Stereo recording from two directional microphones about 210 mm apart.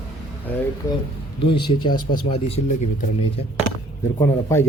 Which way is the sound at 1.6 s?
20° left (ahead or behind).